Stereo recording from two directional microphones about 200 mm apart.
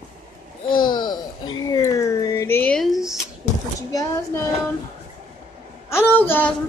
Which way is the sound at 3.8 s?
15° left (ahead or behind).